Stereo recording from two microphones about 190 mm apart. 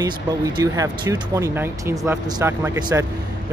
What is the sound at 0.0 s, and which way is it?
Speech, 20° right (ahead or behind).